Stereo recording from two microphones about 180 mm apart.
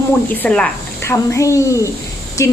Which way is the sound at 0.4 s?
5° left (ahead or behind).